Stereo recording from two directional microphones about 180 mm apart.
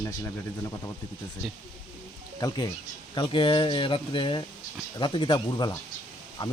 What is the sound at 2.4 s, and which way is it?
Speech, 20° left (ahead or behind).